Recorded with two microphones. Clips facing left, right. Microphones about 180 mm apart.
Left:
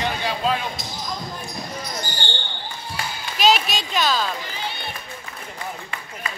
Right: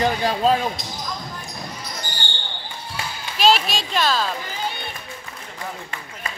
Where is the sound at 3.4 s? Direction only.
Centre (ahead or behind).